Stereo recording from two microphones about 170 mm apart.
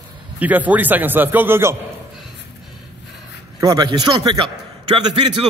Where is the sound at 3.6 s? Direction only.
20° right (ahead or behind).